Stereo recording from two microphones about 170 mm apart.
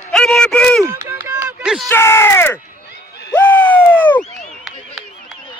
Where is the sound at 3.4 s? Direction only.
10° left (ahead or behind).